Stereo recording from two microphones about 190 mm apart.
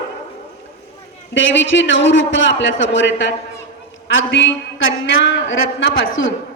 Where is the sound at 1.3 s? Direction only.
75° left (ahead or behind).